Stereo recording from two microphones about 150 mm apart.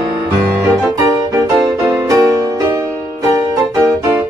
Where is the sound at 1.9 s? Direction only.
20° right (ahead or behind).